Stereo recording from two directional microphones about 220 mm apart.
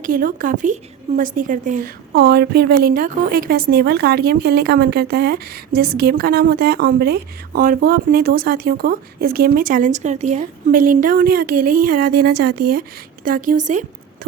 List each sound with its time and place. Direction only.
0.0 s a woman's voice: 40° right (ahead or behind)